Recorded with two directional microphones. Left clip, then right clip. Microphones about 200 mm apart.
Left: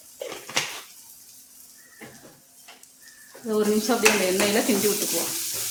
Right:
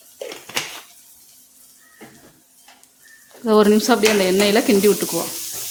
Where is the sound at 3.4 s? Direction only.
60° right (ahead or behind).